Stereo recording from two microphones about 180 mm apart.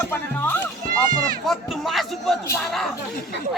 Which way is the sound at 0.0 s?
15° left (ahead or behind).